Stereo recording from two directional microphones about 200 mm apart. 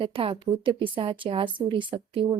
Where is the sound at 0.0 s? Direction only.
25° right (ahead or behind).